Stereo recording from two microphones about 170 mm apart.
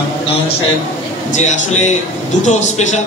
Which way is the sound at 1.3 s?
45° left (ahead or behind).